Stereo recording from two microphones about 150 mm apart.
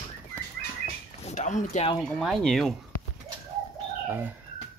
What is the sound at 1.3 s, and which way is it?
Speech, 55° left (ahead or behind).